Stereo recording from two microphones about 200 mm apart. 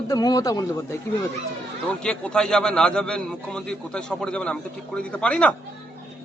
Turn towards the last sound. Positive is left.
turn(degrees=5)  # may be behind; listen again after turning